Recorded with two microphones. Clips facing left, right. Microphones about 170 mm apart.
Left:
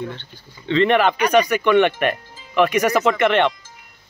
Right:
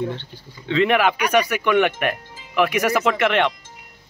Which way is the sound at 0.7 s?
5° right (ahead or behind).